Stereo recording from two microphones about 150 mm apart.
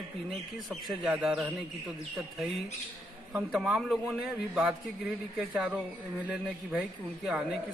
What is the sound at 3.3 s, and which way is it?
A man's voice, 5° right (ahead or behind).